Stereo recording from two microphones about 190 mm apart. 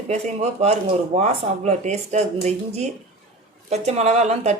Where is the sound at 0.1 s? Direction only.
35° right (ahead or behind).